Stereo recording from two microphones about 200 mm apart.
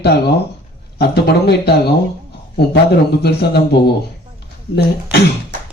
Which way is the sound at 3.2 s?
55° left (ahead or behind).